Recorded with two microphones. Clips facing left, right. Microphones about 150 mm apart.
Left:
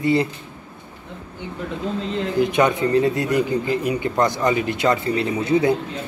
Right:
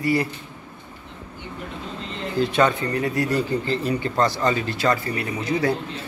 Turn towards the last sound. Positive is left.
turn(degrees=25)  # may be behind; listen again after turning